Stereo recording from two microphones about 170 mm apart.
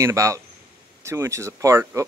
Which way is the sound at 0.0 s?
20° right (ahead or behind).